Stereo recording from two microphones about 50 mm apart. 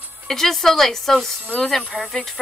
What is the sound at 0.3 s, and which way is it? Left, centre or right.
Speech, centre.